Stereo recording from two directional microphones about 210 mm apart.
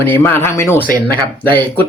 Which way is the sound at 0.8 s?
45° left (ahead or behind).